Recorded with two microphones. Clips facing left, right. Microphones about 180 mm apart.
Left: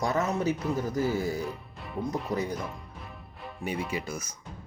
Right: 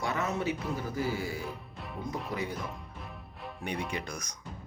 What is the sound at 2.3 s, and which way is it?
Speech, 40° left (ahead or behind).